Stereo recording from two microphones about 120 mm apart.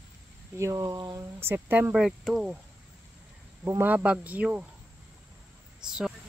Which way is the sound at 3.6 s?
20° right (ahead or behind).